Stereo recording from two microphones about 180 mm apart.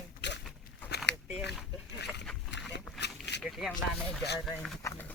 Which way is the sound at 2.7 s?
70° left (ahead or behind).